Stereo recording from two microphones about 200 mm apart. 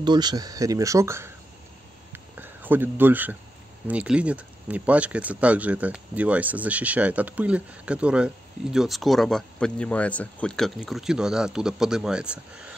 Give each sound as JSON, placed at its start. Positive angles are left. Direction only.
{"t": 0.0, "sound": "speech", "side_deg": -20}
{"t": 2.3, "sound": "speech", "side_deg": -10}